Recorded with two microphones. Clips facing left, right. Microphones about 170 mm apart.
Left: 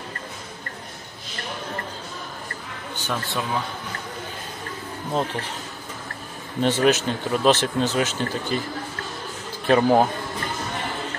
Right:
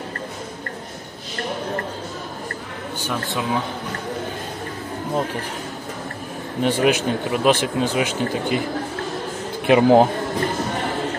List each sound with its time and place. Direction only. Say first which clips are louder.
3.0 s a man's voice: right 2 dB; 10° right (ahead or behind)
6.6 s speech: right 1 dB; 10° right (ahead or behind)
9.7 s speech: right 4 dB; 15° right (ahead or behind)